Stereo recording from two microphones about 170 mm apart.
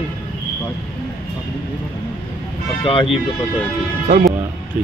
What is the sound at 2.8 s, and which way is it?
Speech, 30° left (ahead or behind).